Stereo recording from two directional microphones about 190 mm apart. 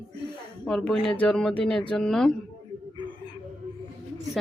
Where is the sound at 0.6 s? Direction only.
5° left (ahead or behind).